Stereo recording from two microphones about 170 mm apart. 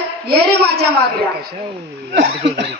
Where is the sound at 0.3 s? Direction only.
75° right (ahead or behind).